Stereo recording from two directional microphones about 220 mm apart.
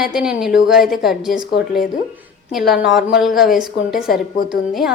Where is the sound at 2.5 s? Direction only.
Centre (ahead or behind).